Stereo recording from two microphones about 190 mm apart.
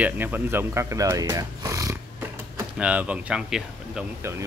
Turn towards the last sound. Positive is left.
turn(degrees=-15)  # may be behind; listen again after turning